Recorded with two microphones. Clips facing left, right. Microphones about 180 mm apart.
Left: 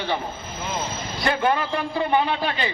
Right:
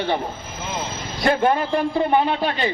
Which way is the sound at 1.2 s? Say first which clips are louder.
Right 4 dB; 45° right (ahead or behind).